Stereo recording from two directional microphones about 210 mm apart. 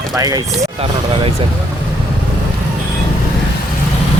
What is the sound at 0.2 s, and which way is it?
Speech, 15° right (ahead or behind).